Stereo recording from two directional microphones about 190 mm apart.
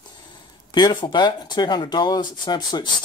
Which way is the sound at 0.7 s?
25° left (ahead or behind).